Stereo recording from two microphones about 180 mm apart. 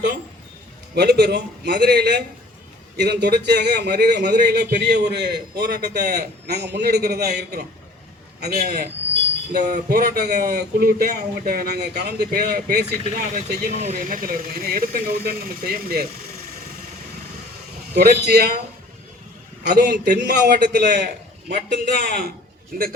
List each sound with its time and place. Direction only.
0.9 s a man's voice: 65° right (ahead or behind)
13.7 s speech: 45° right (ahead or behind)
17.9 s speech: 60° right (ahead or behind)
19.6 s a man's voice: 65° right (ahead or behind)
21.5 s speech: 55° right (ahead or behind)